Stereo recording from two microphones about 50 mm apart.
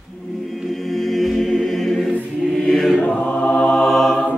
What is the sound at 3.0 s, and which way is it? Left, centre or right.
Chant, left.